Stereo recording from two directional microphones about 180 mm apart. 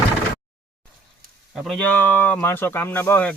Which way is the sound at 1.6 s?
5° left (ahead or behind).